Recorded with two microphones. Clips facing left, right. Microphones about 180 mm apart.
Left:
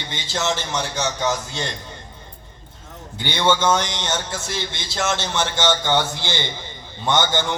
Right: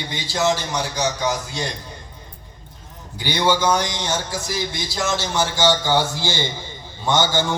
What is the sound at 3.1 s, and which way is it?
A man's voice, 25° left (ahead or behind).